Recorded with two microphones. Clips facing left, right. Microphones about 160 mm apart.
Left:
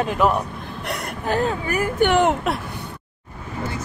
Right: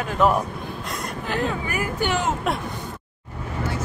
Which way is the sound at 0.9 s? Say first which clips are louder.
Left 5 dB; 65° left (ahead or behind).